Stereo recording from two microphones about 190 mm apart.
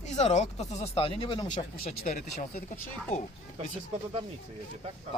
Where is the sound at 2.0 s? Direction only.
45° left (ahead or behind).